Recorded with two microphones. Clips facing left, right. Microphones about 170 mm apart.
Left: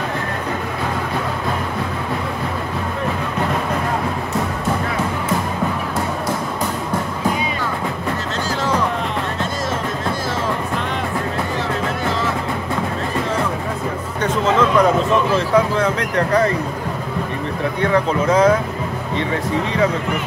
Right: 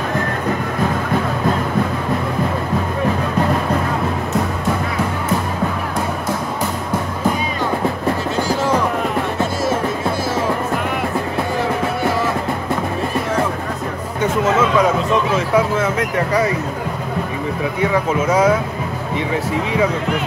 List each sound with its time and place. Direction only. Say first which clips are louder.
14.2 s a sound: right 1 dB; 5° right (ahead or behind)
15.3 s speech: even; 5° right (ahead or behind)
17.7 s speech: left 1 dB; 10° right (ahead or behind)